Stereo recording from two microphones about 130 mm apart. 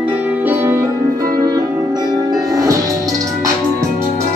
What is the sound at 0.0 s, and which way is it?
Music, 10° right (ahead or behind).